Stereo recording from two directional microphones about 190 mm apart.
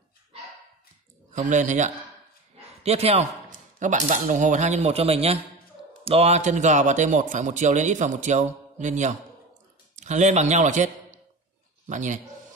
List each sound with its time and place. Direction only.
1.3 s a man's voice: 40° right (ahead or behind)